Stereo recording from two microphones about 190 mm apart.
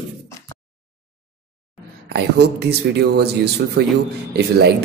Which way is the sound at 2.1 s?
60° right (ahead or behind).